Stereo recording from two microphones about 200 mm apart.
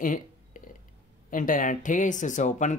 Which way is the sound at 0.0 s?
40° left (ahead or behind).